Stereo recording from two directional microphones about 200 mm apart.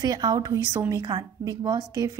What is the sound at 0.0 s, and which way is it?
A woman's voice, 20° right (ahead or behind).